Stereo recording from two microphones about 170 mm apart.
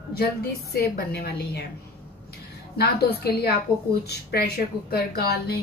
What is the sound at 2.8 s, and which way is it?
A woman's voice, 65° left (ahead or behind).